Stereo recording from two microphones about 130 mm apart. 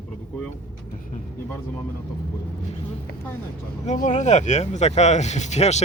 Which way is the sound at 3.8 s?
65° left (ahead or behind).